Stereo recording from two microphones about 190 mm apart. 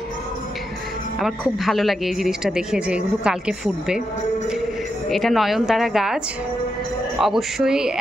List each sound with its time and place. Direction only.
1.2 s speech: centre (ahead or behind)
5.1 s speech: centre (ahead or behind)